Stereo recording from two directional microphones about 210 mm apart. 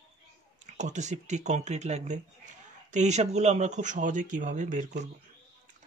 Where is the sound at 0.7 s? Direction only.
35° right (ahead or behind).